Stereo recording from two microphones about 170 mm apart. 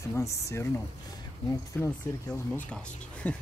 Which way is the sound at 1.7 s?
10° left (ahead or behind).